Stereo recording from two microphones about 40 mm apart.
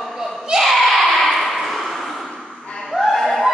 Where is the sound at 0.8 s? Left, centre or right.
Centre.